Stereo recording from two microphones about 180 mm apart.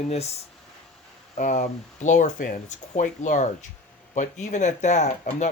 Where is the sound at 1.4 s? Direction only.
45° left (ahead or behind).